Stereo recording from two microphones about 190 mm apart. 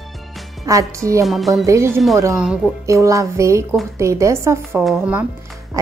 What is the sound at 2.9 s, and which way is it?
A woman's voice, 15° right (ahead or behind).